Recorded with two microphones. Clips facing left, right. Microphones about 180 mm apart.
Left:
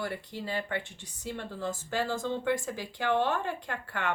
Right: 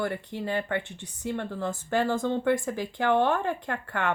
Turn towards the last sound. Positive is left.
turn(degrees=-55)  # may be behind; listen again after turning